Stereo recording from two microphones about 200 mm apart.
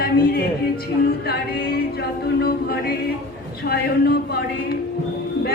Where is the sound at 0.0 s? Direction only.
50° left (ahead or behind).